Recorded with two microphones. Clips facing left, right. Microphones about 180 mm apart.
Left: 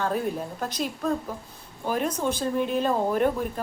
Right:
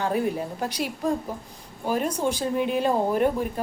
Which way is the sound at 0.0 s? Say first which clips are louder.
Right 2 dB; 10° right (ahead or behind).